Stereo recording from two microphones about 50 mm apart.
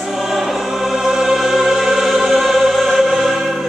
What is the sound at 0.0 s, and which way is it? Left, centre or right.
Music, centre.